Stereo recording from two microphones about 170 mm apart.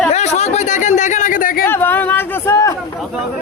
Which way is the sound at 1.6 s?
15° left (ahead or behind).